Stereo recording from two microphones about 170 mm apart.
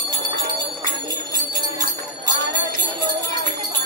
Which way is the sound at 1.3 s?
20° right (ahead or behind).